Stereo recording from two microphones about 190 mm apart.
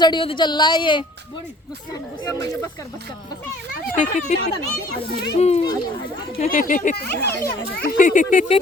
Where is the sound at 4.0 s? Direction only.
40° left (ahead or behind).